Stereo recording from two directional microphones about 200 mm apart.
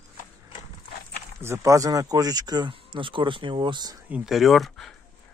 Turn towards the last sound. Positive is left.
turn(degrees=0)  # may be behind; listen again after turning